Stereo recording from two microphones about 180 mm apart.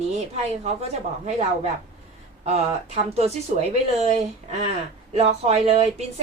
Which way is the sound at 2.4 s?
35° right (ahead or behind).